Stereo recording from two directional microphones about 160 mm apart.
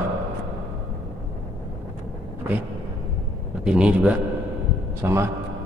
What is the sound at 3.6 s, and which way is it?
A man's voice, 5° right (ahead or behind).